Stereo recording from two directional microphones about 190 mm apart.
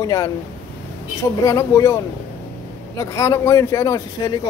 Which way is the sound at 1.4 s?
15° left (ahead or behind).